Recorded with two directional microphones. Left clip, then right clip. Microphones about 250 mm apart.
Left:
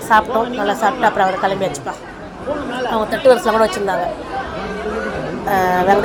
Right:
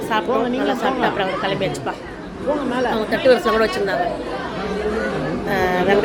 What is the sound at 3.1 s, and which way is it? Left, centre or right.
Speech, centre.